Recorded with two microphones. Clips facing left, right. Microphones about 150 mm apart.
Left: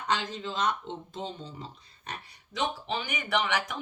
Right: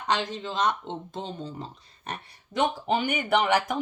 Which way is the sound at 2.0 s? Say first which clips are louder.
Right 4 dB; 50° right (ahead or behind).